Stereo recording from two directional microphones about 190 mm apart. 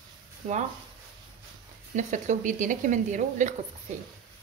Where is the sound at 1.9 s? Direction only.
40° right (ahead or behind).